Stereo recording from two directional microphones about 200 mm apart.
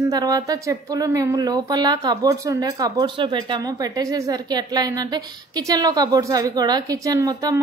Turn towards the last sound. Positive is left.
turn(degrees=-20)  # may be behind; listen again after turning